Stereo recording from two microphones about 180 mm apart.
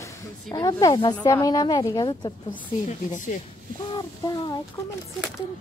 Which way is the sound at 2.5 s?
45° left (ahead or behind).